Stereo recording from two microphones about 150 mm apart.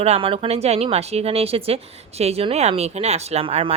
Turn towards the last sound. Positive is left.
turn(degrees=-40)  # may be behind; listen again after turning